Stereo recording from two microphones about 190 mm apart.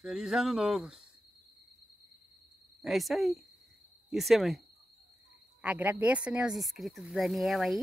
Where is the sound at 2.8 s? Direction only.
Centre (ahead or behind).